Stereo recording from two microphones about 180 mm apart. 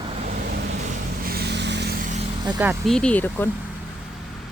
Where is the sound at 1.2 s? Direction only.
60° right (ahead or behind).